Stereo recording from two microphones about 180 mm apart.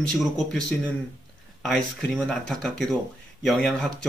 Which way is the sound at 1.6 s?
5° left (ahead or behind).